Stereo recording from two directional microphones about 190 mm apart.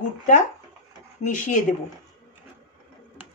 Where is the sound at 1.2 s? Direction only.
40° left (ahead or behind).